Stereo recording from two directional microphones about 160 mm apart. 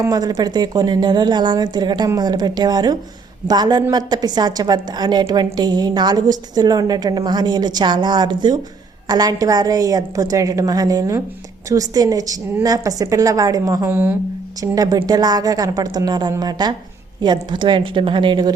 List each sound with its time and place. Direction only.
0.0 s a woman's voice: 25° right (ahead or behind)
14.6 s a woman's voice: 20° right (ahead or behind)